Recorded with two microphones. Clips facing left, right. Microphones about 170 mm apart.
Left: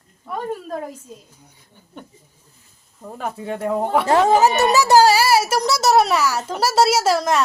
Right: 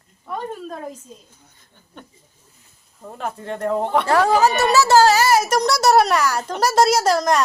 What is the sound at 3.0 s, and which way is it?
Speech, centre (ahead or behind).